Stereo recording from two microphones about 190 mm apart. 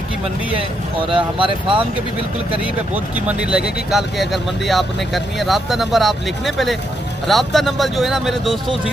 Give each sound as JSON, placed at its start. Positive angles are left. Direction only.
{"t": 1.1, "sound": "speech", "side_deg": -25}
{"t": 2.9, "sound": "speech", "side_deg": -5}